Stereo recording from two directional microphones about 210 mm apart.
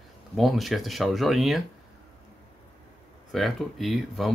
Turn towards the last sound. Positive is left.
turn(degrees=0)  # may be behind; listen again after turning